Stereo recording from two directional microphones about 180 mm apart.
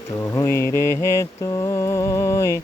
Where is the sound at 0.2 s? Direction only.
20° left (ahead or behind).